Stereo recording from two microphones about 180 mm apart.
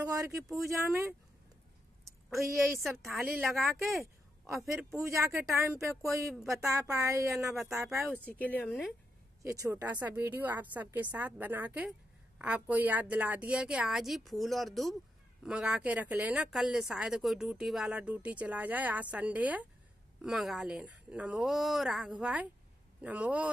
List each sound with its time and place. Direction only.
0.0 s a woman's voice: 20° right (ahead or behind)
2.3 s a woman's voice: 15° right (ahead or behind)
3.4 s a woman's voice: centre (ahead or behind)
3.9 s a sound: 15° right (ahead or behind)
4.7 s a woman's voice: 15° right (ahead or behind)
8.4 s speech: 10° left (ahead or behind)
9.4 s a woman's voice: 15° right (ahead or behind)